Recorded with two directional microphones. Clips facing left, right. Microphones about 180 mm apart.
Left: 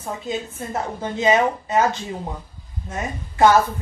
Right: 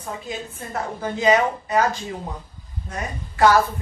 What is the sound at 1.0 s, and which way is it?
Speech, 25° left (ahead or behind).